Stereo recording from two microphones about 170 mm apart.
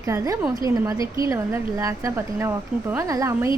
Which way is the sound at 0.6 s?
20° right (ahead or behind).